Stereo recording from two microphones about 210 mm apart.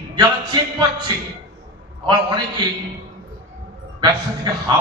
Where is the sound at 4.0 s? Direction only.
20° right (ahead or behind).